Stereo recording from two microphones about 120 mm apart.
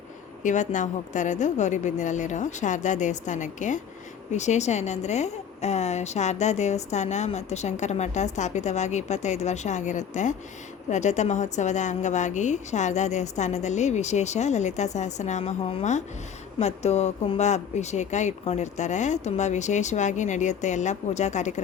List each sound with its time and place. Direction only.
0.4 s a woman's voice: 90° left
4.3 s a woman's voice: 75° left (ahead or behind)
10.8 s a woman's voice: 80° left